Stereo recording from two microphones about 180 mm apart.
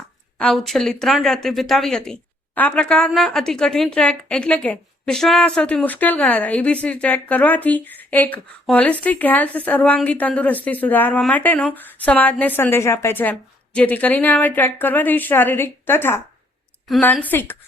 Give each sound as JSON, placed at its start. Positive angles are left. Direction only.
{"t": 0.3, "sound": "a woman's voice", "side_deg": 0}